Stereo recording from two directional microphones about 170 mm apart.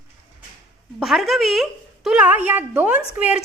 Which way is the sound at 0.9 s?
Centre (ahead or behind).